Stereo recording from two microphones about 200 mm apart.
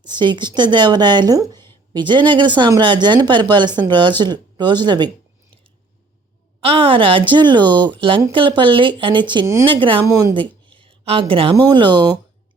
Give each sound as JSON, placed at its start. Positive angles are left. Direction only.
{"t": 0.0, "sound": "speech", "side_deg": -20}
{"t": 6.6, "sound": "speech", "side_deg": -25}